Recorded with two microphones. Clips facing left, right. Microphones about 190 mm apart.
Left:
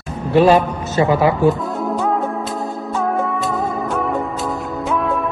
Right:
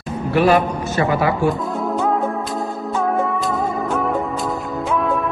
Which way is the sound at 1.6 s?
Centre (ahead or behind).